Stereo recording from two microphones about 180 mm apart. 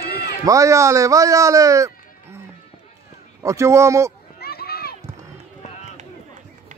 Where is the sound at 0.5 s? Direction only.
15° right (ahead or behind).